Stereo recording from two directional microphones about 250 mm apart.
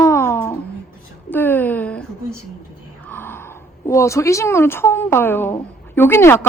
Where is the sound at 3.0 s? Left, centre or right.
Centre.